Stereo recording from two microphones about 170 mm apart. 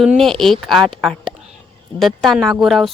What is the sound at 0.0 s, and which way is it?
A woman's voice, centre (ahead or behind).